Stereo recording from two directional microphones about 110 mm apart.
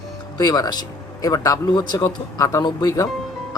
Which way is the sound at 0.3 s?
35° left (ahead or behind).